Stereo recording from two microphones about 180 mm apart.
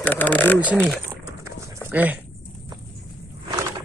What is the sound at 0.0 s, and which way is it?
Speech, 10° left (ahead or behind).